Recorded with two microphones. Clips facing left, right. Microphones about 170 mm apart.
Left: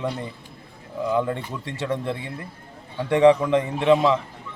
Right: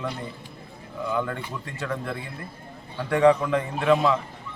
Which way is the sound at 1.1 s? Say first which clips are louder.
Left 4 dB; 30° left (ahead or behind).